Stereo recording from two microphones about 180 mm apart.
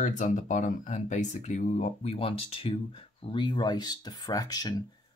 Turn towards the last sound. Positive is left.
turn(degrees=20)  # may be behind; listen again after turning